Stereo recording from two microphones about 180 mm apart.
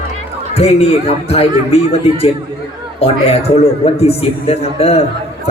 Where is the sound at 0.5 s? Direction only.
35° left (ahead or behind).